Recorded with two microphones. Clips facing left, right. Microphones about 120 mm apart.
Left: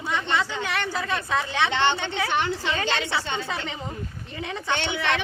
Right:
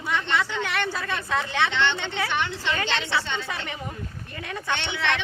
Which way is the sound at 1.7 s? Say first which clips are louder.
Left 2 dB; 35° left (ahead or behind).